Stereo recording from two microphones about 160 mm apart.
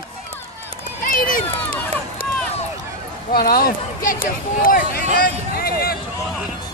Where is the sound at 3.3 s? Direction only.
70° left (ahead or behind).